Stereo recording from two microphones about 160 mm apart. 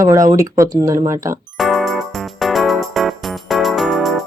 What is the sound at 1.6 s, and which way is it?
Music, centre (ahead or behind).